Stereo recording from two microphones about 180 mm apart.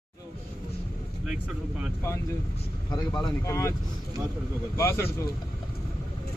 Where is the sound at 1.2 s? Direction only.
5° right (ahead or behind).